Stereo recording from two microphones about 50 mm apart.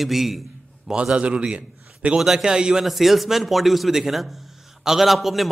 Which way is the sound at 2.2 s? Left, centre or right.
Centre.